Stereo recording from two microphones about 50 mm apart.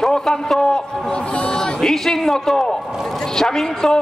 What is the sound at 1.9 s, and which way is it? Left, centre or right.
A man's voice, centre.